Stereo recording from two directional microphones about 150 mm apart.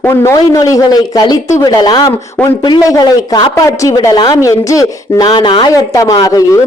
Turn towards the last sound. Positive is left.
turn(degrees=25)  # may be behind; listen again after turning